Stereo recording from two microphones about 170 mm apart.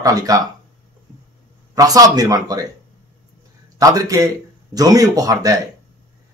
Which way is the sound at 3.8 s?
20° right (ahead or behind).